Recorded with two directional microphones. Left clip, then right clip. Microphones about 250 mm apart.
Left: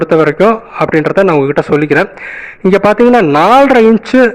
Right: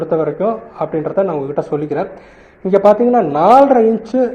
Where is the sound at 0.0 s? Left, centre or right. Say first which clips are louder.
Left 8 dB; left.